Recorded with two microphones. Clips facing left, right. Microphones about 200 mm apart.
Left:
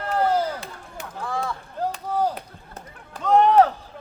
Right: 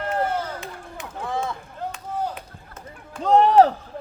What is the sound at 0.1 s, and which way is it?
Chop, 35° left (ahead or behind).